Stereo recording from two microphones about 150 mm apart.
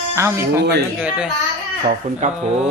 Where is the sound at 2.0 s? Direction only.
45° right (ahead or behind).